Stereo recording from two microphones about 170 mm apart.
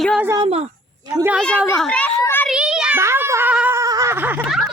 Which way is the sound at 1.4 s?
10° left (ahead or behind).